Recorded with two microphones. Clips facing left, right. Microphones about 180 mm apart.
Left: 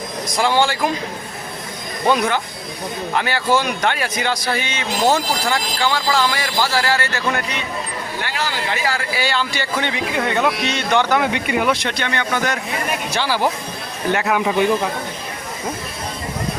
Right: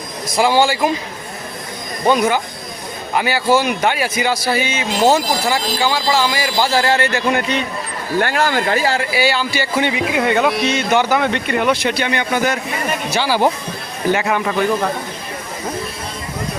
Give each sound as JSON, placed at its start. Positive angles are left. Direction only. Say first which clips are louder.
{"t": 0.3, "sound": "a man's voice", "louder": "right 3 dB", "side_deg": -5}
{"t": 2.0, "sound": "a man's voice", "louder": "right 3 dB", "side_deg": 0}
{"t": 6.7, "sound": "a man's voice", "louder": "right 4 dB", "side_deg": -25}
{"t": 8.2, "sound": "speech", "louder": "right 9 dB", "side_deg": -50}
{"t": 8.8, "sound": "a man's voice", "louder": "right 4 dB", "side_deg": -25}
{"t": 9.1, "sound": "a man's voice", "louder": "right 4 dB", "side_deg": -10}
{"t": 11.2, "sound": "a man's voice", "louder": "right 1 dB", "side_deg": 10}